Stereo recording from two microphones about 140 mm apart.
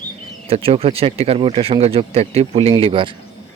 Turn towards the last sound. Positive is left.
turn(degrees=-40)  # may be behind; listen again after turning